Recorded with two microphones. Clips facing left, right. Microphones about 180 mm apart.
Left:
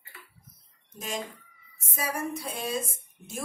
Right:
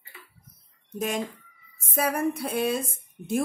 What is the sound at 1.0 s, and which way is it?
A woman's voice, 60° right (ahead or behind).